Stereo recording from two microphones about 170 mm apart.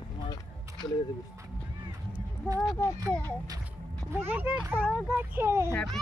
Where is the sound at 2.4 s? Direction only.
5° left (ahead or behind).